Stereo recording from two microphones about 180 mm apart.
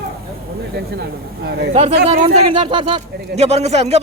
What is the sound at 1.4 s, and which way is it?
Speech, 65° right (ahead or behind).